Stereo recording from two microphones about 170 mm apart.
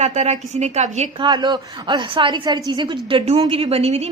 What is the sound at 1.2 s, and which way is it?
A woman's voice, 25° right (ahead or behind).